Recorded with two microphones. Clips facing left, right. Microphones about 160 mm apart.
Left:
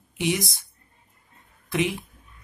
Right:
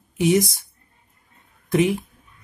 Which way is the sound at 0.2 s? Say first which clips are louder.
Right 8 dB; 45° right (ahead or behind).